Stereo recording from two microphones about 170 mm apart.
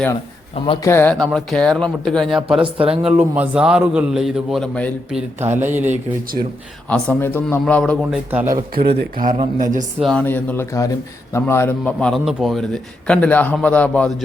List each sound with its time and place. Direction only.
0.9 s a man's voice: 10° left (ahead or behind)
2.6 s speech: 30° right (ahead or behind)
3.0 s a man's voice: 10° right (ahead or behind); by 4.9 s 5° left (ahead or behind)
5.4 s speech: 15° right (ahead or behind)
6.8 s a man's voice: 5° left (ahead or behind)
8.1 s speech: 10° right (ahead or behind)
8.7 s speech: 65° right (ahead or behind)
9.3 s speech: 45° right (ahead or behind)
10.0 s a man's voice: 5° left (ahead or behind)